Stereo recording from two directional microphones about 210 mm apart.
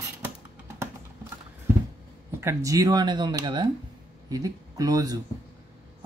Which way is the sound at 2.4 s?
15° right (ahead or behind).